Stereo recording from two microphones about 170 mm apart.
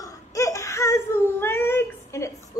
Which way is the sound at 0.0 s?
20° left (ahead or behind).